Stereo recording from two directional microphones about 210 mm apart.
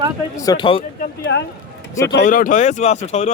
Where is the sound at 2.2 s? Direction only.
40° left (ahead or behind).